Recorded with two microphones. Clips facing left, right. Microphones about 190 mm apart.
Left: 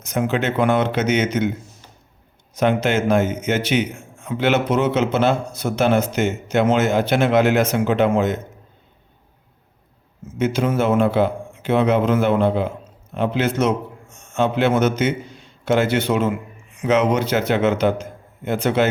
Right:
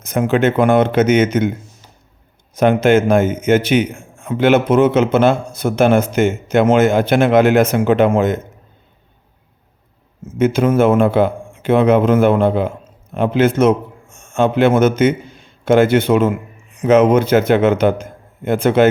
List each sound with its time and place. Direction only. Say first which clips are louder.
0.0 s a man's voice: right 6 dB; 55° right (ahead or behind)
2.6 s a man's voice: right 6 dB; 50° right (ahead or behind)
10.3 s a man's voice: right 6 dB; 55° right (ahead or behind)